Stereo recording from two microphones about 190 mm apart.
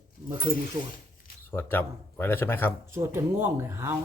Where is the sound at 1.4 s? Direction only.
10° left (ahead or behind).